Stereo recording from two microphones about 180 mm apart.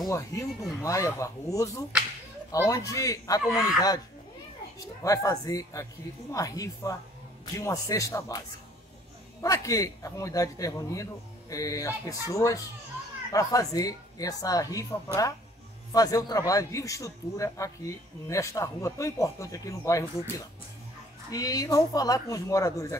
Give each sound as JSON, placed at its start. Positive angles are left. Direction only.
{"t": 0.0, "sound": "a man's voice", "side_deg": 15}
{"t": 3.4, "sound": "speech", "side_deg": 0}
{"t": 4.7, "sound": "a man's voice", "side_deg": 20}
{"t": 9.4, "sound": "a man's voice", "side_deg": 15}